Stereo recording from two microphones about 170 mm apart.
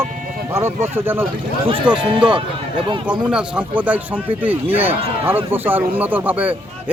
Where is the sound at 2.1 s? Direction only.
30° right (ahead or behind).